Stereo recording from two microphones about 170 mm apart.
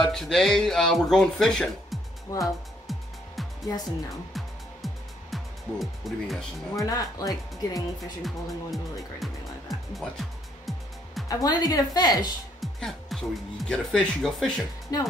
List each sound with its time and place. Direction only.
0.0 s speech: 5° left (ahead or behind)
2.4 s music: centre (ahead or behind)
6.9 s a woman's voice: 20° left (ahead or behind)
8.2 s speech: centre (ahead or behind)
11.2 s a woman's voice: 20° left (ahead or behind)
12.5 s speech: centre (ahead or behind)
14.9 s a woman's voice: 20° left (ahead or behind)